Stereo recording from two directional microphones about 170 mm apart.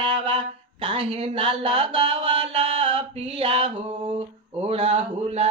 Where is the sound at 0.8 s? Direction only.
30° right (ahead or behind).